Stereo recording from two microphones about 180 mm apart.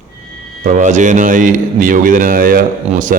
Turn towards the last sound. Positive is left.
turn(degrees=-45)  # may be behind; listen again after turning